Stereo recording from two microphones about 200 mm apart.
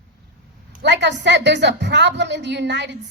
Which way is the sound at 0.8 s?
60° right (ahead or behind).